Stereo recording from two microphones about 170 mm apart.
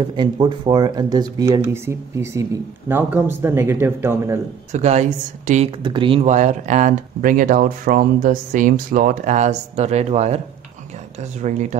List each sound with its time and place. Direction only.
0.0 s speech: 30° right (ahead or behind)
4.7 s speech: 40° right (ahead or behind)
5.9 s speech: 30° right (ahead or behind)
6.2 s speech: 45° right (ahead or behind)
11.4 s speech: 45° right (ahead or behind)